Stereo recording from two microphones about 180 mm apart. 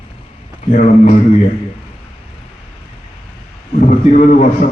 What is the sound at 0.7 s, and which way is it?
Speech, 45° left (ahead or behind).